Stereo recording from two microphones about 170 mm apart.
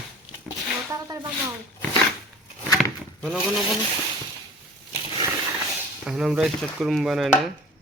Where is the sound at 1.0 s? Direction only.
20° right (ahead or behind).